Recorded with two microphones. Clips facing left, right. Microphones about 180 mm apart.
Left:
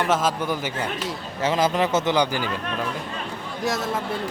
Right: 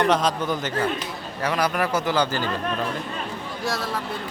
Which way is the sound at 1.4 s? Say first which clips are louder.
Left 2 dB; 25° left (ahead or behind).